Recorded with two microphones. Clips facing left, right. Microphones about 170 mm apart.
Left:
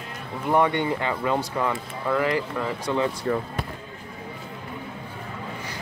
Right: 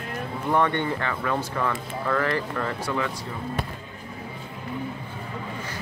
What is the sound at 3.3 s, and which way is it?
Speech, 60° left (ahead or behind).